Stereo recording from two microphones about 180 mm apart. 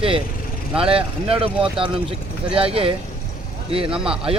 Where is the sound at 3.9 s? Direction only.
5° right (ahead or behind).